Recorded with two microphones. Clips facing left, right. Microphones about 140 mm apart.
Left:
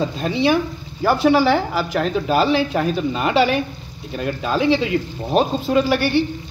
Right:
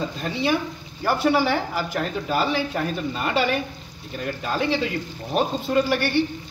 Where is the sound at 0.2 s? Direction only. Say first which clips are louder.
Left 6 dB; 90° left.